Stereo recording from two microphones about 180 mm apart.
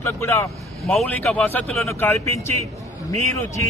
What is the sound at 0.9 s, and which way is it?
Speech, 5° left (ahead or behind).